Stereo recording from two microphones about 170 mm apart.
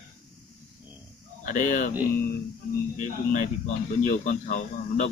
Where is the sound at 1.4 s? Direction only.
45° left (ahead or behind).